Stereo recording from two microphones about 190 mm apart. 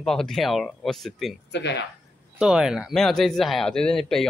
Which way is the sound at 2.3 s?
5° right (ahead or behind).